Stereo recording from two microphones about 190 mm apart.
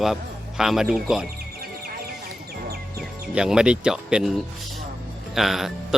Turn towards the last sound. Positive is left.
turn(degrees=0)  # may be behind; listen again after turning